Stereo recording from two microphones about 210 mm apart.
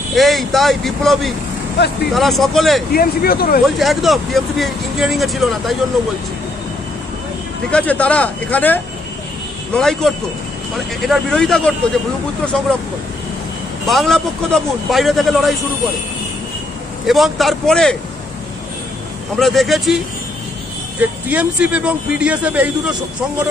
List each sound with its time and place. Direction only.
0.1 s speech: centre (ahead or behind)
2.9 s speech: 45° left (ahead or behind)
3.7 s speech: centre (ahead or behind)
7.7 s speech: 5° left (ahead or behind)
13.8 s speech: centre (ahead or behind)
17.0 s speech: centre (ahead or behind)
19.3 s speech: centre (ahead or behind)
21.0 s speech: 5° right (ahead or behind)